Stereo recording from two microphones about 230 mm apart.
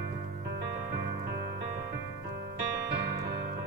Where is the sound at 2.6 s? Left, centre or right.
Right.